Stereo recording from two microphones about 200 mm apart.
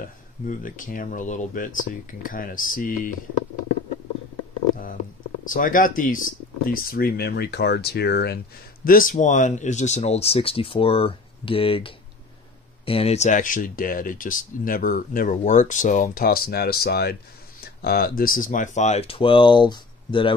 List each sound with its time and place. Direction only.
0.0 s speech: 45° left (ahead or behind)
5.4 s speech: 45° left (ahead or behind); by 20.3 s 25° left (ahead or behind)